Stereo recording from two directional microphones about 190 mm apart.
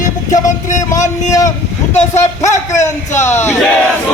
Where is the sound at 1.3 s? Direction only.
15° left (ahead or behind).